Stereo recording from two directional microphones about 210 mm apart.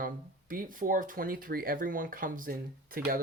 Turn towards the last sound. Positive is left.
turn(degrees=-45)  # may be behind; listen again after turning